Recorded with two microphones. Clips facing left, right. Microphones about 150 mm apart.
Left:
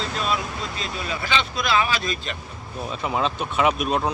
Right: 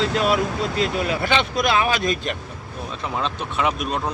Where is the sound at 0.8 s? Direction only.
60° right (ahead or behind).